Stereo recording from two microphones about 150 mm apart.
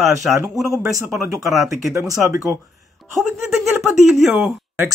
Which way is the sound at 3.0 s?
Centre (ahead or behind).